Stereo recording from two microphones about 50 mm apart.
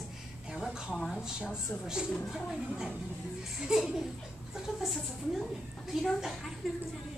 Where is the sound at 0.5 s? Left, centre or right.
Centre.